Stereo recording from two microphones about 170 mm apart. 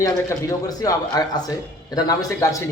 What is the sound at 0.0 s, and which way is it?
A man's voice, 20° left (ahead or behind).